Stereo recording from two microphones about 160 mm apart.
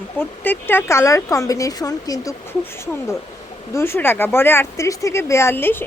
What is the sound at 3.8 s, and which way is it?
Speech, 15° left (ahead or behind).